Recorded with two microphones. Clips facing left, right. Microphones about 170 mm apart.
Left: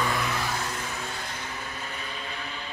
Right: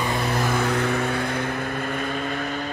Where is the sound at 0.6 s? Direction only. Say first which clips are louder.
Right 12 dB; 65° right (ahead or behind); by 2.5 s 50° right (ahead or behind).